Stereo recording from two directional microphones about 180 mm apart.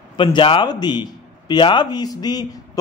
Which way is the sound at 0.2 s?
30° left (ahead or behind).